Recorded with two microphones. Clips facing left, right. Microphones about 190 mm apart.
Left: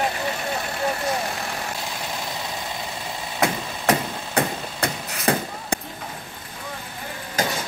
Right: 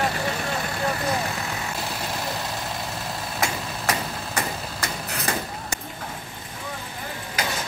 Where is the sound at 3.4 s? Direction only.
60° left (ahead or behind).